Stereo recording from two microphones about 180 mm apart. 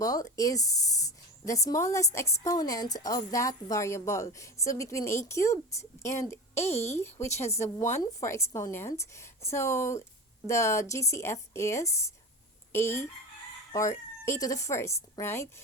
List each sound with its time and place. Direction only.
0.0 s speech: 20° left (ahead or behind)
6.6 s a woman's voice: 35° left (ahead or behind)
7.0 s speech: 15° left (ahead or behind)